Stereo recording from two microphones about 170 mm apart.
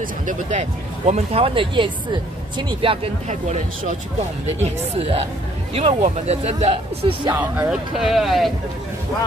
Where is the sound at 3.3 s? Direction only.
45° right (ahead or behind).